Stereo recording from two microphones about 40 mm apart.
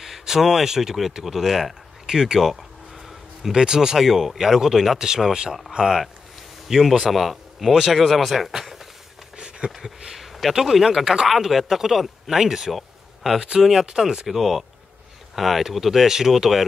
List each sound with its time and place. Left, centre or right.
0.0 s speech: centre
2.0 s speech: centre
3.5 s speech: centre
9.7 s speech: centre
11.2 s speech: centre
12.7 s a sound: centre
13.4 s speech: centre